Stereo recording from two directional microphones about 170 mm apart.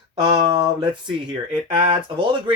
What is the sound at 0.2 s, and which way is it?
Speech, 30° right (ahead or behind).